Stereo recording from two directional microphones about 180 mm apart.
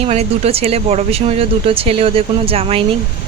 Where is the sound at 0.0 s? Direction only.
35° right (ahead or behind).